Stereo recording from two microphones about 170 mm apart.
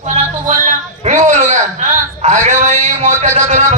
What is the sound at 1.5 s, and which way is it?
A man's voice, 45° right (ahead or behind).